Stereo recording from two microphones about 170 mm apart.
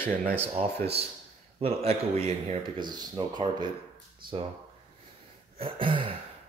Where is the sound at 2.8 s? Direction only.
25° right (ahead or behind).